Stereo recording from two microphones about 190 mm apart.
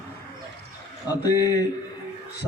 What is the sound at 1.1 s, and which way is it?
Speech, 20° left (ahead or behind).